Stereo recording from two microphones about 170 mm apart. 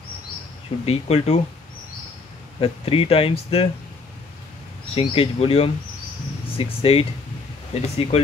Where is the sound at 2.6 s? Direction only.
35° left (ahead or behind).